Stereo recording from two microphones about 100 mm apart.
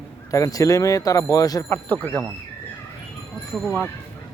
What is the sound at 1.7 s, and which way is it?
Speech, 20° left (ahead or behind).